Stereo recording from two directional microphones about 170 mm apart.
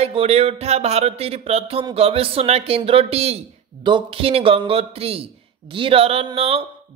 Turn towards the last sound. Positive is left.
turn(degrees=-35)  # may be behind; listen again after turning